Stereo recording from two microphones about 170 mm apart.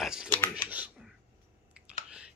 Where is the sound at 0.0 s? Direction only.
5° right (ahead or behind).